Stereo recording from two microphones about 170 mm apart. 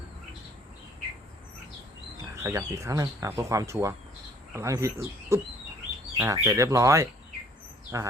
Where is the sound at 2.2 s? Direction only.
15° right (ahead or behind).